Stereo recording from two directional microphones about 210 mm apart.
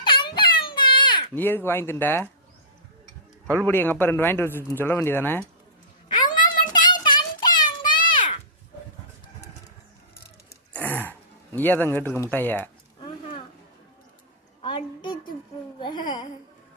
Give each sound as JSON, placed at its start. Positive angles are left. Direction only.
{"t": 0.0, "sound": "baby cry", "side_deg": 25}
{"t": 1.4, "sound": "speech", "side_deg": 10}
{"t": 3.4, "sound": "a man's voice", "side_deg": -15}
{"t": 3.7, "sound": "speech", "side_deg": 10}
{"t": 6.1, "sound": "a sound", "side_deg": 40}
{"t": 6.8, "sound": "child singing", "side_deg": 20}
{"t": 10.7, "sound": "throat clearing", "side_deg": 5}
{"t": 11.5, "sound": "speech", "side_deg": 10}
{"t": 14.6, "sound": "a sound", "side_deg": 25}